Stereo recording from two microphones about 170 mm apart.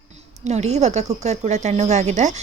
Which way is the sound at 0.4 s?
40° right (ahead or behind).